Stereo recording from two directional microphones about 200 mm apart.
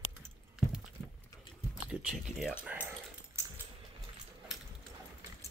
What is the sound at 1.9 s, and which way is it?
Speech, 5° right (ahead or behind).